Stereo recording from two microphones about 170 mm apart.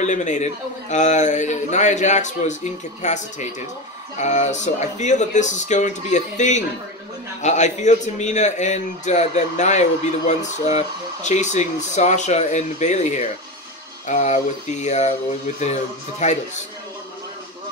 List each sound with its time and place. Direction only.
0.0 s a man's voice: 45° left (ahead or behind)